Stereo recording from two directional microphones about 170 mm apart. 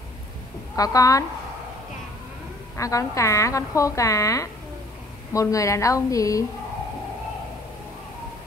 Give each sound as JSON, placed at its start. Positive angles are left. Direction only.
{"t": 0.7, "sound": "a woman's voice", "side_deg": 20}
{"t": 2.8, "sound": "a woman's voice", "side_deg": 20}